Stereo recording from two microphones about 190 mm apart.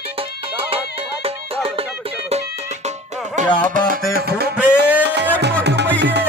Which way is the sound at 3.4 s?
40° right (ahead or behind).